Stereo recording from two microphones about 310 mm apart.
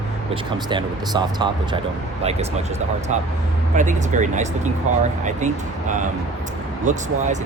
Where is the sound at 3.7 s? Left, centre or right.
Right.